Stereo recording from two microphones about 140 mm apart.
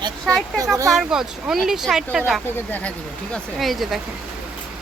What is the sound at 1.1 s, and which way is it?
Speech, 5° right (ahead or behind).